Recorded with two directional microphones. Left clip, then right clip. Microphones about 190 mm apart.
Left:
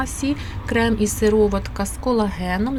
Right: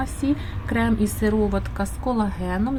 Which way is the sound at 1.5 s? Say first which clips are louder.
Left 2 dB; 5° left (ahead or behind).